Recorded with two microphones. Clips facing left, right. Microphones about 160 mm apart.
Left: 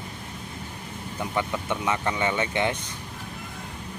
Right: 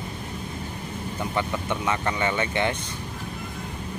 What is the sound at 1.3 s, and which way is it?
Speech, 15° left (ahead or behind).